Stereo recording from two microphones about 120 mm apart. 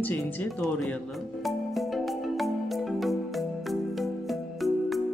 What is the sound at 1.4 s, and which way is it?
Music, centre (ahead or behind).